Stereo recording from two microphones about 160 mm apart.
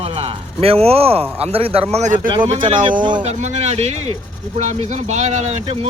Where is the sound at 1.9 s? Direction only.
50° right (ahead or behind).